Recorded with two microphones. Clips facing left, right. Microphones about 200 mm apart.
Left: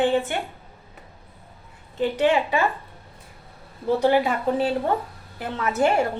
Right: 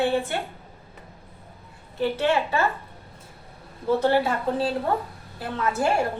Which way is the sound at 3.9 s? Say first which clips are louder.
Left 1 dB; 15° left (ahead or behind).